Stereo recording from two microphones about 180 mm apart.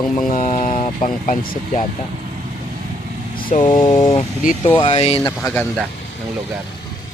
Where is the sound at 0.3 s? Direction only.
45° left (ahead or behind).